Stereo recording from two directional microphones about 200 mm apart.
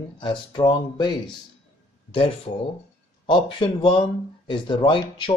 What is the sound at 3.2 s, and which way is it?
Speech, 25° left (ahead or behind).